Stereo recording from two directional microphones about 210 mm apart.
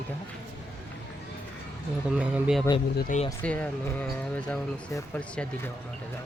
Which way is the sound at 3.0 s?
40° left (ahead or behind).